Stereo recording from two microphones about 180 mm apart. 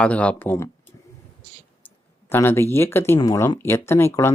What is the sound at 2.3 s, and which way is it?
Speech, 10° left (ahead or behind).